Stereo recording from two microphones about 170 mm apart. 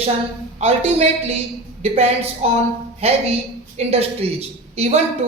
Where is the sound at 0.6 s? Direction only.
40° right (ahead or behind).